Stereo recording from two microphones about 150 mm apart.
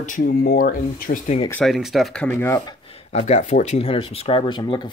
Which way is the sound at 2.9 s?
45° left (ahead or behind).